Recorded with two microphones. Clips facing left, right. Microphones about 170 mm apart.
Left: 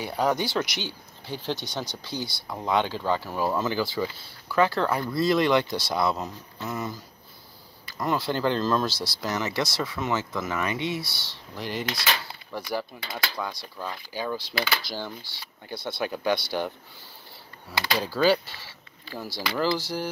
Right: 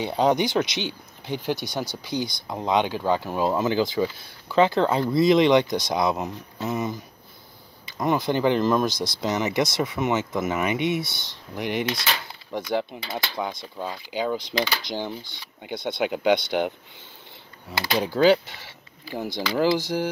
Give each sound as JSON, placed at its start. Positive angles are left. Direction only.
{"t": 0.0, "sound": "speech", "side_deg": -20}